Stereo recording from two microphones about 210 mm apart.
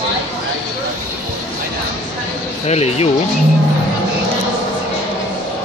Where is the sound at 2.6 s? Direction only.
30° left (ahead or behind).